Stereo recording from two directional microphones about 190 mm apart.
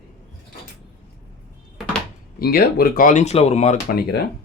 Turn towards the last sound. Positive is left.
turn(degrees=55)  # may be behind; listen again after turning